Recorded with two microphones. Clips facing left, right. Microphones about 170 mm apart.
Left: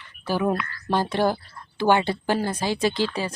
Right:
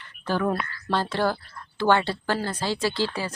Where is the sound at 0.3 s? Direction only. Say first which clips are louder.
Left 1 dB; 10° left (ahead or behind).